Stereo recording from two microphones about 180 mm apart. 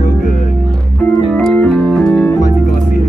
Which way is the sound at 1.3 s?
5° left (ahead or behind).